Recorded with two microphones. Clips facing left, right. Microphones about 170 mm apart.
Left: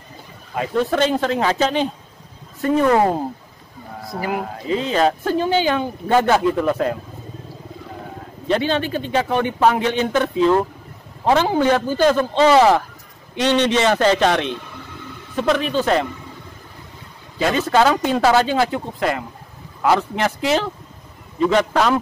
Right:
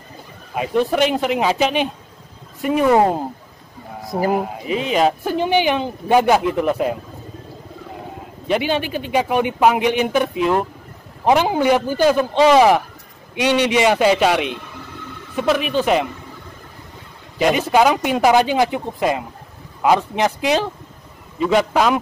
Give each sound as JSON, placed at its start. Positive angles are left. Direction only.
{"t": 0.6, "sound": "speech", "side_deg": -15}
{"t": 4.4, "sound": "speech", "side_deg": -15}
{"t": 8.5, "sound": "speech", "side_deg": -10}
{"t": 17.4, "sound": "speech", "side_deg": -15}